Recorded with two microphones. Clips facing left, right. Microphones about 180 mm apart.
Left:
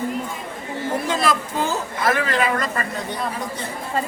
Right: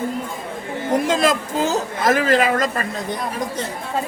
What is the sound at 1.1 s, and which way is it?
A woman's voice, 45° right (ahead or behind).